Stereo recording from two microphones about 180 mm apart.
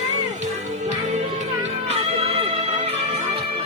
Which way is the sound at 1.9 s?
35° right (ahead or behind).